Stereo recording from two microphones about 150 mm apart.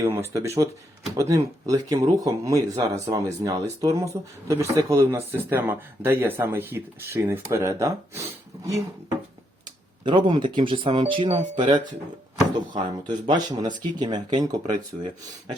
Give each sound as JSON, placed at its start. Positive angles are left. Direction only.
{"t": 0.0, "sound": "speech", "side_deg": -15}
{"t": 10.1, "sound": "speech", "side_deg": -30}